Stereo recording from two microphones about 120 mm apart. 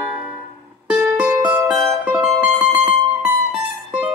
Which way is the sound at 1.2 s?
10° right (ahead or behind).